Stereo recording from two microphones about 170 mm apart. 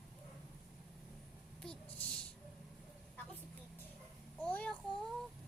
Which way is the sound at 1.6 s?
5° left (ahead or behind).